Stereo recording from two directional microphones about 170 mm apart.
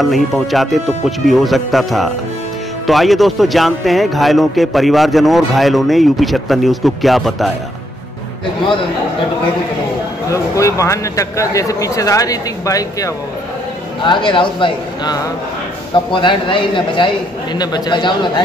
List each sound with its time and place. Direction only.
0.0 s a man's voice: centre (ahead or behind)
10.3 s speech: 20° left (ahead or behind)